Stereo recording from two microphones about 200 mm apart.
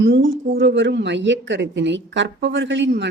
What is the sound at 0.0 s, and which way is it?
A woman's voice, 70° right (ahead or behind).